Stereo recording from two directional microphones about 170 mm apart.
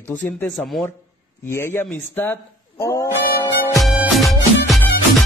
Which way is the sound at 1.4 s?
15° left (ahead or behind).